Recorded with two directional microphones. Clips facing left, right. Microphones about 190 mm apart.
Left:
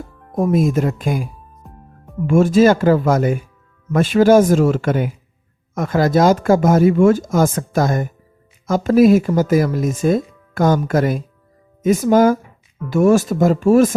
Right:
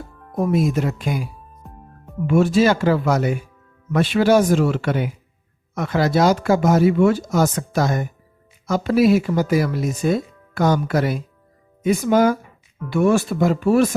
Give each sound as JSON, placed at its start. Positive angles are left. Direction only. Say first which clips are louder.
{"t": 0.3, "sound": "speech", "louder": "left 3 dB", "side_deg": 45}
{"t": 1.6, "sound": "music", "louder": "even", "side_deg": 0}
{"t": 2.2, "sound": "speech", "louder": "left 4 dB", "side_deg": 45}